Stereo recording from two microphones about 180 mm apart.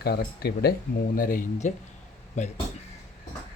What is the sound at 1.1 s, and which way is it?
Speech, 50° left (ahead or behind).